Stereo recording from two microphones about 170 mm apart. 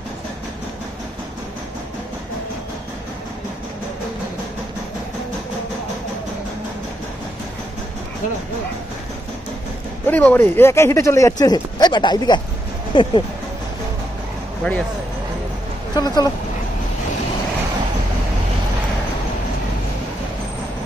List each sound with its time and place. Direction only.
10.0 s speech: 10° left (ahead or behind); by 13.2 s 30° left (ahead or behind)
15.9 s speech: 25° left (ahead or behind)